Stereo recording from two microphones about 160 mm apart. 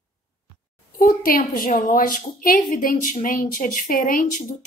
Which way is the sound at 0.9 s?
60° left (ahead or behind).